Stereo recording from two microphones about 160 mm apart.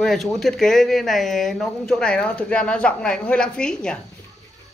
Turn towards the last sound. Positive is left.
turn(degrees=5)  # may be behind; listen again after turning